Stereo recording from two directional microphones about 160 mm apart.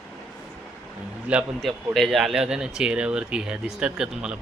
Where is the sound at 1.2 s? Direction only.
5° right (ahead or behind).